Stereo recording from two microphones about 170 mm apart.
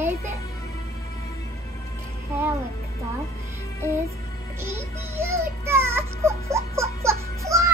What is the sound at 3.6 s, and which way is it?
Music, 15° left (ahead or behind).